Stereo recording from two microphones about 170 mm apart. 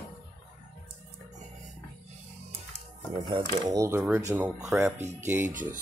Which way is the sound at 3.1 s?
35° right (ahead or behind).